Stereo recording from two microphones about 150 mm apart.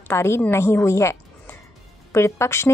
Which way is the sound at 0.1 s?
15° left (ahead or behind).